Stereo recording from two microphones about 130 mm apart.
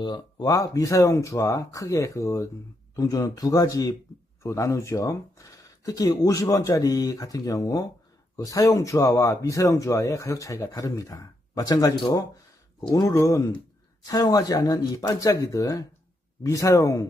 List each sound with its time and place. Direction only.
0.0 s speech: 35° left (ahead or behind)